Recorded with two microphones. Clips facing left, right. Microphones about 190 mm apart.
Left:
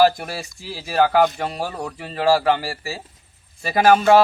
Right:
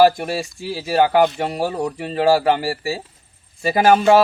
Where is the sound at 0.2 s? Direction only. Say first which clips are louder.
Right 7 dB; 30° right (ahead or behind).